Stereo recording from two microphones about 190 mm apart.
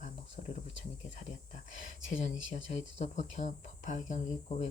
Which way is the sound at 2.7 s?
35° left (ahead or behind).